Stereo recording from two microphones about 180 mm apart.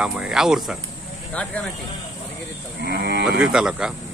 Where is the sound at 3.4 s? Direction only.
5° right (ahead or behind).